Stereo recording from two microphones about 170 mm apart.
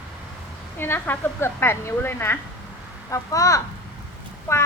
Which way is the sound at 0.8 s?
15° left (ahead or behind).